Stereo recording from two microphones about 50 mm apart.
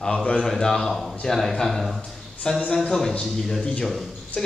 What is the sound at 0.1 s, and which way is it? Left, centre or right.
Speech, left.